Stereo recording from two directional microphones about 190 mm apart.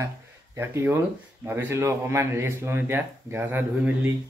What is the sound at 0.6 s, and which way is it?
Speech, 10° right (ahead or behind).